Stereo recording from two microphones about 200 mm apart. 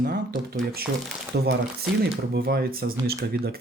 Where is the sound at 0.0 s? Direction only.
50° right (ahead or behind).